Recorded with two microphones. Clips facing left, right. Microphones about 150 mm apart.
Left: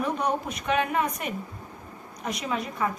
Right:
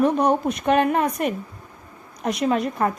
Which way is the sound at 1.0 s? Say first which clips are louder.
Right 6 dB; 60° right (ahead or behind).